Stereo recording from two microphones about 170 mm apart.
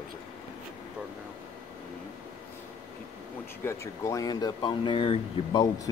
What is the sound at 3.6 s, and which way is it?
Speech, 15° left (ahead or behind).